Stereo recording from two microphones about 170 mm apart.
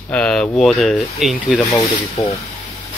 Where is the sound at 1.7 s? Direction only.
20° left (ahead or behind).